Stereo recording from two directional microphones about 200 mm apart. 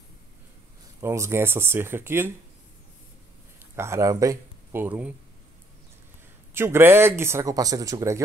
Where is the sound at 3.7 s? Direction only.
15° right (ahead or behind).